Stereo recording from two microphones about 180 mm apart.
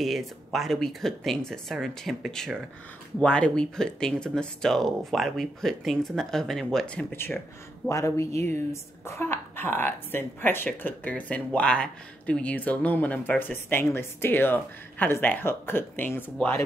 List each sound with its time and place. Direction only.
0.0 s a woman's voice: centre (ahead or behind)